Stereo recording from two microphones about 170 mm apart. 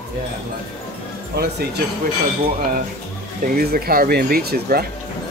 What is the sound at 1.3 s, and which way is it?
Speech, 70° right (ahead or behind).